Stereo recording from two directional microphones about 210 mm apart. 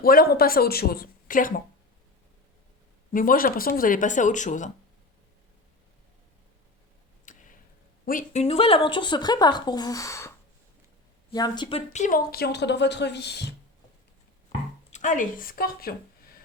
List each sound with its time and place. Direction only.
0.0 s speech: 45° left (ahead or behind)
3.1 s speech: 40° left (ahead or behind)
7.3 s a sound: 40° left (ahead or behind)
8.0 s speech: 35° left (ahead or behind)
11.9 s speech: 40° left (ahead or behind)
14.9 s speech: 40° left (ahead or behind)